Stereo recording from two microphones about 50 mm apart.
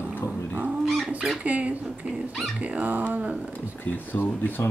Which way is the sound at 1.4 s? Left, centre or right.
Right.